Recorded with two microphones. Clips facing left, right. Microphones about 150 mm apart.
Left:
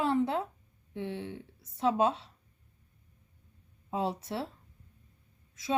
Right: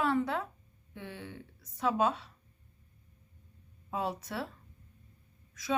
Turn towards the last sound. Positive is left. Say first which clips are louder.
# left 1 dB
turn(degrees=25)  # may be behind; listen again after turning